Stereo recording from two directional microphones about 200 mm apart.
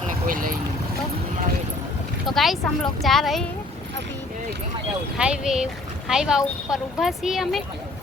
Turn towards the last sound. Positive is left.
turn(degrees=0)  # may be behind; listen again after turning